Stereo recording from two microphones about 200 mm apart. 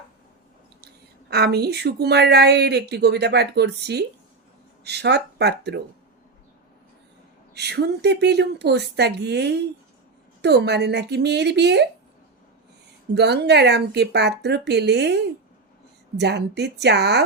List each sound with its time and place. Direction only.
1.3 s speech: 55° right (ahead or behind)
7.5 s speech: 55° right (ahead or behind)
13.1 s speech: 55° right (ahead or behind)